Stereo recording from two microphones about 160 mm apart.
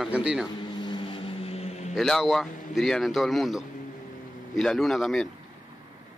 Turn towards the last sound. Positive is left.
turn(degrees=0)  # may be behind; listen again after turning